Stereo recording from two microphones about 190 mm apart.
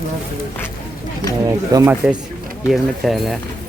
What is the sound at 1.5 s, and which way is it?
Speech, 15° right (ahead or behind).